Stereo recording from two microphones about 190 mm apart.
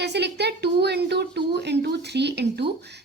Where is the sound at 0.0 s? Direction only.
60° right (ahead or behind).